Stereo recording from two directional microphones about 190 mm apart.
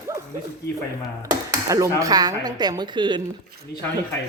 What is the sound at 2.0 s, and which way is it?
A woman's voice, 20° right (ahead or behind).